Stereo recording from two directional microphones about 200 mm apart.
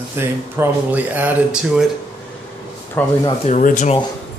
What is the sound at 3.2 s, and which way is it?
Speech, 35° left (ahead or behind).